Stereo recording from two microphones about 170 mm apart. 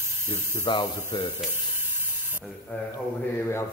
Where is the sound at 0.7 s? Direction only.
25° left (ahead or behind).